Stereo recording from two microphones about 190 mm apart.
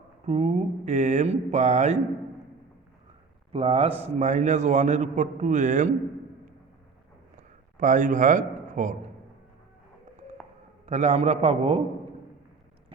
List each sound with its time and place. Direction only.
0.3 s a man's voice: 35° right (ahead or behind)
3.5 s a man's voice: 30° right (ahead or behind)
7.3 s a sound: 40° right (ahead or behind)
10.8 s a man's voice: 40° right (ahead or behind)